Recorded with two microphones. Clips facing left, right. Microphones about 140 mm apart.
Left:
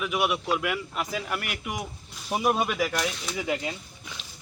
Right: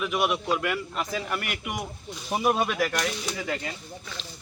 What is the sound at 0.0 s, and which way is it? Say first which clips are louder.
Speech: right 1 dB; 5° left (ahead or behind).